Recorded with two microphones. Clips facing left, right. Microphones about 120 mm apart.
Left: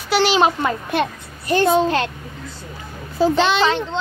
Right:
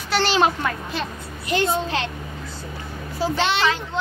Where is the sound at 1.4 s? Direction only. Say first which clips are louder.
Left 6 dB; 50° left (ahead or behind).